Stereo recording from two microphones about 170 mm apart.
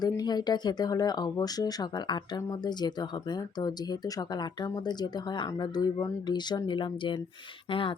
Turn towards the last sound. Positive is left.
turn(degrees=30)  # may be behind; listen again after turning